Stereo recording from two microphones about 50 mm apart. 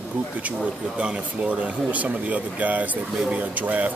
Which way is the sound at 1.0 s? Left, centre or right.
Right.